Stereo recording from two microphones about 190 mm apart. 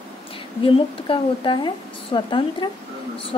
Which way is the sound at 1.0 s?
25° left (ahead or behind).